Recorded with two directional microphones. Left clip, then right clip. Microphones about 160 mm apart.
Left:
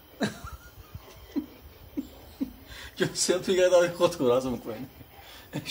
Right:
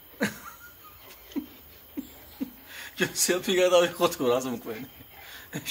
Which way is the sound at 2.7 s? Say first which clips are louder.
Right 1 dB; 25° right (ahead or behind).